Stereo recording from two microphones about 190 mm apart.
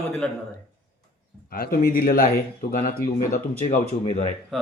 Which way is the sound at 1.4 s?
50° left (ahead or behind).